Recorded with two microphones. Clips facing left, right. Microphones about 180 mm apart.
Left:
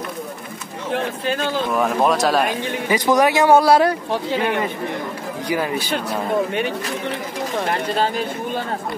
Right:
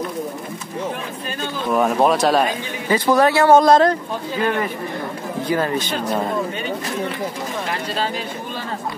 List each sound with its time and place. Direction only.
0.9 s speech: 90° left
1.8 s speech: 5° right (ahead or behind)
2.9 s speech: 15° left (ahead or behind)
7.6 s speech: 50° left (ahead or behind)